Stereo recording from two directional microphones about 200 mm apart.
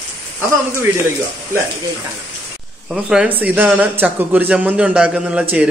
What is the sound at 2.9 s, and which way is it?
A man's voice, 5° right (ahead or behind).